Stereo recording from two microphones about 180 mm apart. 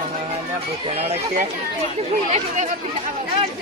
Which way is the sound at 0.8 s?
35° right (ahead or behind).